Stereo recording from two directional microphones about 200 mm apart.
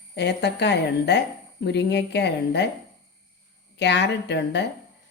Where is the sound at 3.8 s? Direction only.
60° left (ahead or behind).